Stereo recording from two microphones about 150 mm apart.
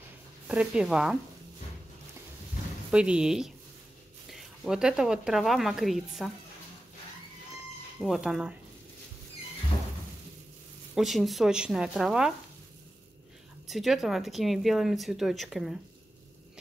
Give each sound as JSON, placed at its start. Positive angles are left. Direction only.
{"t": 0.5, "sound": "speech", "side_deg": -5}
{"t": 2.9, "sound": "speech", "side_deg": -5}
{"t": 8.0, "sound": "speech", "side_deg": 0}
{"t": 11.0, "sound": "speech", "side_deg": 0}
{"t": 13.7, "sound": "speech", "side_deg": 0}